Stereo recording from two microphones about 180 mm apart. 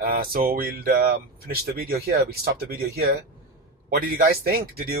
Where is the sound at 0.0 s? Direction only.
55° right (ahead or behind).